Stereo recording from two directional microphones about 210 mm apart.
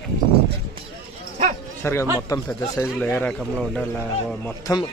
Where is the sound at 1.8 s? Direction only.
10° left (ahead or behind).